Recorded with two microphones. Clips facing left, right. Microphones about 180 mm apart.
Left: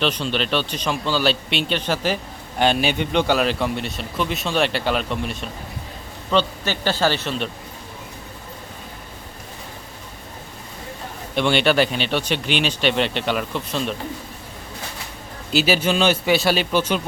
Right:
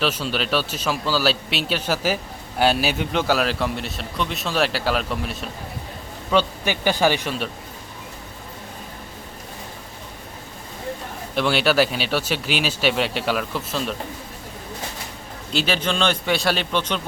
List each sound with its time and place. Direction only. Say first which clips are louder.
0.0 s a man's voice: left 1 dB; 5° right (ahead or behind)
6.3 s speech: even; 15° right (ahead or behind)
11.3 s a man's voice: left 1 dB; 5° right (ahead or behind)
15.5 s a man's voice: left 4 dB; 5° left (ahead or behind)